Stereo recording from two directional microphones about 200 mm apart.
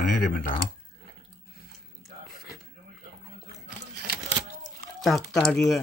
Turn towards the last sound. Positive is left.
turn(degrees=0)  # may be behind; listen again after turning